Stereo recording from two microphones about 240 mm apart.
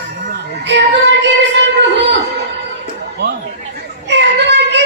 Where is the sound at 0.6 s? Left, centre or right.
Right.